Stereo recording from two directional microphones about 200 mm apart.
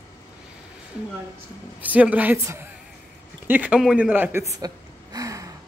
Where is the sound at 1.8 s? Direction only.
5° right (ahead or behind).